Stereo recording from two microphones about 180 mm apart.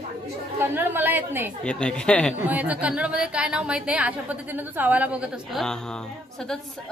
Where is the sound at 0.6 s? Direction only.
10° right (ahead or behind).